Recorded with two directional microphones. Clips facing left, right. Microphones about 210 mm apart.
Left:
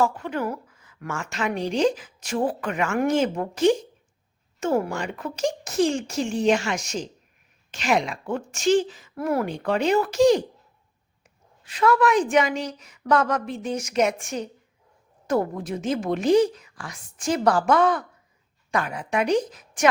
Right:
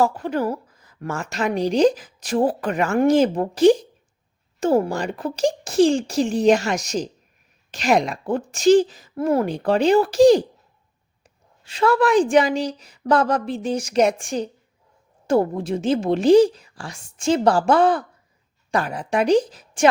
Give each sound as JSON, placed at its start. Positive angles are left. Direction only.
{"t": 0.0, "sound": "a woman's voice", "side_deg": -35}
{"t": 9.1, "sound": "a woman's voice", "side_deg": -25}
{"t": 11.6, "sound": "a woman's voice", "side_deg": -30}